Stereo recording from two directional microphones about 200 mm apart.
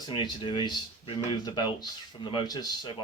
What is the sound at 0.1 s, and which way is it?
Speech, 25° left (ahead or behind).